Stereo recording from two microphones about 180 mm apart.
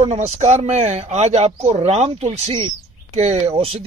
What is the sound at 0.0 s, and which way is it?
Speech, 35° right (ahead or behind).